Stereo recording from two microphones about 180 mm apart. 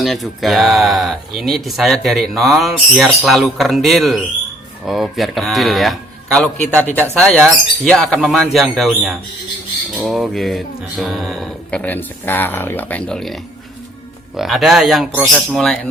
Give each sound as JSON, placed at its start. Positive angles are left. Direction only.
{"t": 0.0, "sound": "speech", "side_deg": 0}